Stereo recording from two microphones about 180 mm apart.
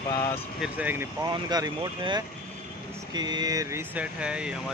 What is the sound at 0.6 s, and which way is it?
Speech, 10° right (ahead or behind).